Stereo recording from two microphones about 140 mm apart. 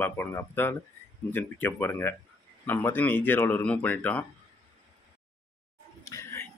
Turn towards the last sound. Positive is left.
turn(degrees=20)  # may be behind; listen again after turning